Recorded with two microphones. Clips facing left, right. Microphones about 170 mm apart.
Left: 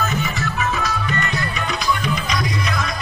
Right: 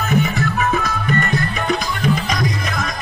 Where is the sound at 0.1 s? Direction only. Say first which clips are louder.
Right 6 dB; 55° right (ahead or behind).